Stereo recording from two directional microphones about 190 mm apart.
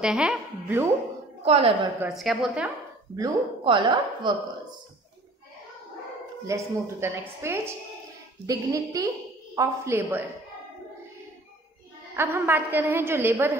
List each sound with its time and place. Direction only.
0.0 s a woman's voice: 5° right (ahead or behind)
1.4 s a woman's voice: 30° right (ahead or behind)
2.0 s a woman's voice: centre (ahead or behind)
3.2 s speech: 25° right (ahead or behind)
6.4 s a woman's voice: 15° right (ahead or behind)
12.2 s a woman's voice: 10° right (ahead or behind)